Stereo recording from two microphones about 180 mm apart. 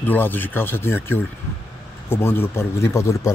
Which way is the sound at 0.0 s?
10° left (ahead or behind).